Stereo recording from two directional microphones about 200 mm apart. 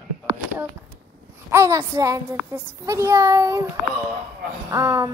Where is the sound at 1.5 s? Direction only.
15° right (ahead or behind).